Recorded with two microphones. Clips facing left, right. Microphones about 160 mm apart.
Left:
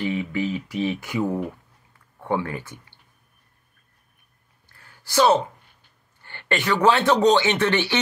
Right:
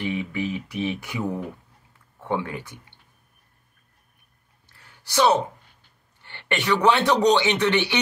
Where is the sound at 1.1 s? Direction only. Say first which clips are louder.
Left 4 dB; 20° left (ahead or behind).